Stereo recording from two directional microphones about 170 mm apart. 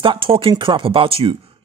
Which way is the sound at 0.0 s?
30° right (ahead or behind).